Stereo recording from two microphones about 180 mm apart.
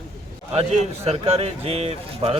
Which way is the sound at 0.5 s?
35° right (ahead or behind).